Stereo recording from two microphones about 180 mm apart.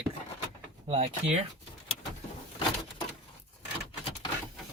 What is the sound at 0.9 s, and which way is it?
Speech, 35° right (ahead or behind).